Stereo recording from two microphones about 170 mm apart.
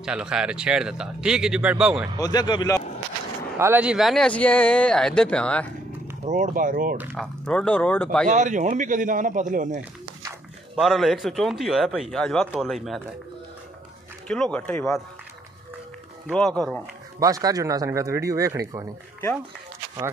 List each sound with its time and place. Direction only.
0.0 s speech: 5° right (ahead or behind)
2.1 s speech: 25° left (ahead or behind)
3.5 s speech: 15° right (ahead or behind); by 5.7 s 5° left (ahead or behind)
6.2 s a man's voice: 50° right (ahead or behind)
7.2 s speech: 5° left (ahead or behind)
8.3 s a man's voice: 45° right (ahead or behind)
10.8 s speech: centre (ahead or behind)
14.2 s speech: 5° left (ahead or behind)
16.3 s speech: 5° left (ahead or behind)
17.2 s speech: 20° right (ahead or behind)